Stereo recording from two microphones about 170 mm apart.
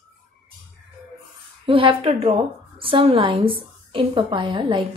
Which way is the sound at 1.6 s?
30° right (ahead or behind).